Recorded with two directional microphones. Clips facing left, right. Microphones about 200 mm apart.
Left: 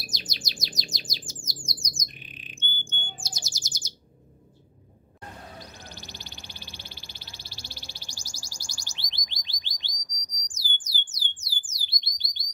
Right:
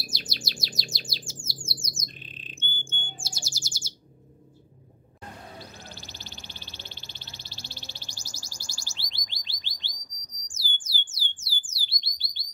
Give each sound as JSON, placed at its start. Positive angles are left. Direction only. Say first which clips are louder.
{"t": 0.0, "sound": "chirp", "louder": "right 2 dB", "side_deg": 15}
{"t": 1.4, "sound": "bird", "louder": "right 1 dB", "side_deg": 15}
{"t": 5.6, "sound": "a sound", "louder": "even", "side_deg": 15}